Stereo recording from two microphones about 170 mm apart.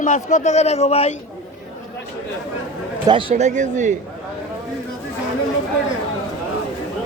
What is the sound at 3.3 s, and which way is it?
Speech, 45° right (ahead or behind).